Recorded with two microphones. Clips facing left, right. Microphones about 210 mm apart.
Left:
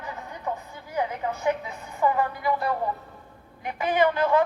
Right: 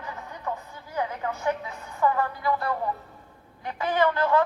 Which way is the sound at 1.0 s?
15° left (ahead or behind).